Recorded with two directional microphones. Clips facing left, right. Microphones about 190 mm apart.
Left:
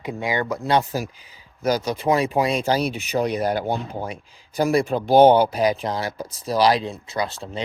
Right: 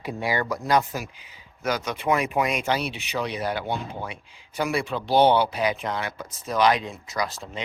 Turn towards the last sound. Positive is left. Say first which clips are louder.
# left 3 dB
turn(degrees=30)  # may be behind; listen again after turning